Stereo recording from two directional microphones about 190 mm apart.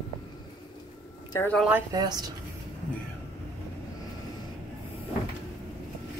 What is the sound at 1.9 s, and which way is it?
Speech, 20° right (ahead or behind).